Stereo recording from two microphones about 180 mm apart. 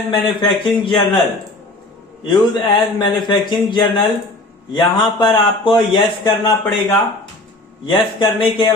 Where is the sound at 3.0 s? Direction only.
25° left (ahead or behind).